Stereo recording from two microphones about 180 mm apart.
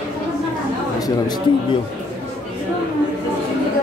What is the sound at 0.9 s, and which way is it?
Speech, 20° left (ahead or behind).